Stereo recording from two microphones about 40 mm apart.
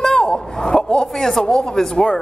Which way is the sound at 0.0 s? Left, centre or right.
Centre.